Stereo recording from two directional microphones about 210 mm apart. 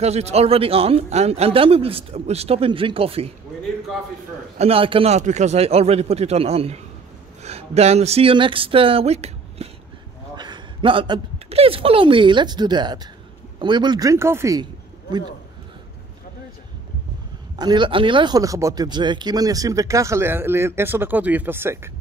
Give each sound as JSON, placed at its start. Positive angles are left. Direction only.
{"t": 0.0, "sound": "speech", "side_deg": -30}
{"t": 4.6, "sound": "a woman's voice", "side_deg": -25}
{"t": 17.6, "sound": "speech", "side_deg": -20}